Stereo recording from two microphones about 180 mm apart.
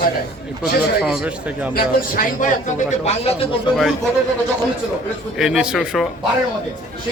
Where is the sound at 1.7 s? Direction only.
50° left (ahead or behind); by 3.3 s 35° left (ahead or behind).